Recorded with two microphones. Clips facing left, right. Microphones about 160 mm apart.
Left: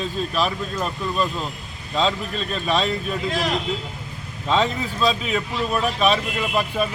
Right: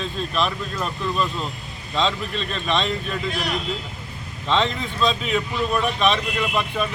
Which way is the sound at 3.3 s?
90° left.